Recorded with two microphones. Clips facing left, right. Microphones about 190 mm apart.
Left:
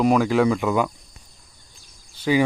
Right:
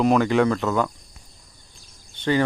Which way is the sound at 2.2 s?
10° left (ahead or behind).